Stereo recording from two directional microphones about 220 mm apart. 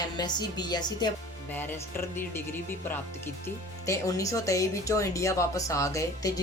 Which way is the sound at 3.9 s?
15° left (ahead or behind).